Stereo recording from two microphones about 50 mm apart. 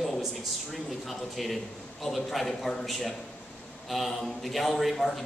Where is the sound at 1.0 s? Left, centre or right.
Centre.